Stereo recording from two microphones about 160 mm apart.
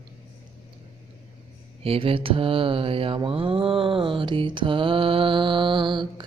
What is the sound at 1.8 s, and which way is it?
Mantra, 35° right (ahead or behind).